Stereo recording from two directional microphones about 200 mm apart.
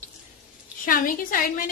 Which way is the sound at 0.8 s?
45° left (ahead or behind).